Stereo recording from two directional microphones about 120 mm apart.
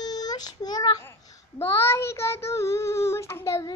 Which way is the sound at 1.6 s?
20° left (ahead or behind).